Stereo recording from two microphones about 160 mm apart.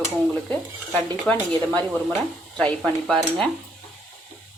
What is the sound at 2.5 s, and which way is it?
Speech, 5° left (ahead or behind).